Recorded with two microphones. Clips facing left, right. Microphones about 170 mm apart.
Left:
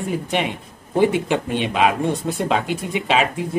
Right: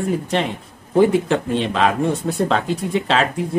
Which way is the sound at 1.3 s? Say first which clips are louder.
Right 2 dB; 15° left (ahead or behind).